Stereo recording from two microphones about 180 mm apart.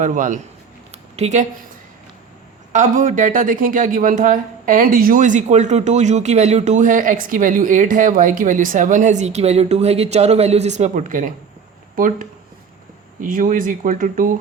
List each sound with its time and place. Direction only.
0.0 s speech: 45° right (ahead or behind)
0.9 s a sound: 35° right (ahead or behind)
2.7 s speech: 45° right (ahead or behind)